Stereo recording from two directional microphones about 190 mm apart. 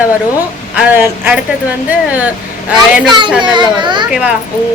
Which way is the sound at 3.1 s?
25° right (ahead or behind).